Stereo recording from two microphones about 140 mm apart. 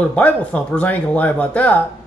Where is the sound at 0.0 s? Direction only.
10° left (ahead or behind).